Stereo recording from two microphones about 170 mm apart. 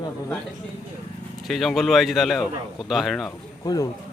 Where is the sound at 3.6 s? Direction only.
25° left (ahead or behind).